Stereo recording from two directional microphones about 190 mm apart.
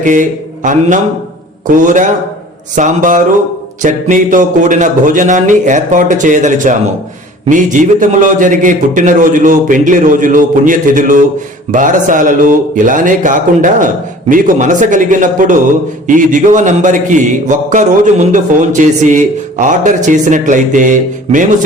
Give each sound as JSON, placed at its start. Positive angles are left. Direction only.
{"t": 0.0, "sound": "a man's voice", "side_deg": -40}